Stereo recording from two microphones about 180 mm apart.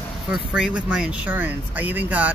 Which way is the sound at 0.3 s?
5° right (ahead or behind).